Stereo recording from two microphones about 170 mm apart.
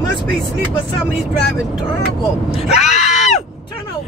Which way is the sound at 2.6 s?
40° left (ahead or behind).